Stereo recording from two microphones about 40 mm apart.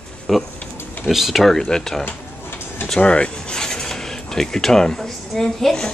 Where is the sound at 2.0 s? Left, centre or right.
Left.